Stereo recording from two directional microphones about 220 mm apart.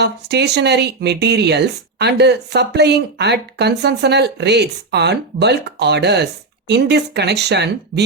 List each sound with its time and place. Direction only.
0.0 s speech: 50° right (ahead or behind)